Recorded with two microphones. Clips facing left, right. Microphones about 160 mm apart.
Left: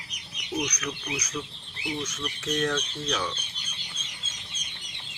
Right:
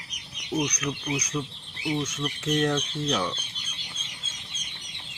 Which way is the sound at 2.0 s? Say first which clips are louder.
Right 3 dB; 30° right (ahead or behind).